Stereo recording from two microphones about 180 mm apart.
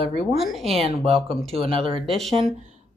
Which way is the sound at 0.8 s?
30° right (ahead or behind).